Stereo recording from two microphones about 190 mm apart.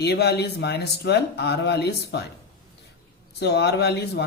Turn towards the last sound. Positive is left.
turn(degrees=60)  # may be behind; listen again after turning